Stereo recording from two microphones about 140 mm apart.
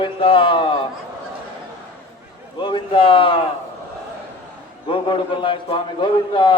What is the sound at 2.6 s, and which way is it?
Speech, 35° left (ahead or behind).